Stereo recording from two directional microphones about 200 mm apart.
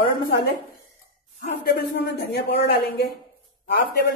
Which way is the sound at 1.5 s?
55° left (ahead or behind).